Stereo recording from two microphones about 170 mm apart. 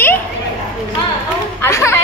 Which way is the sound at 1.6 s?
15° left (ahead or behind).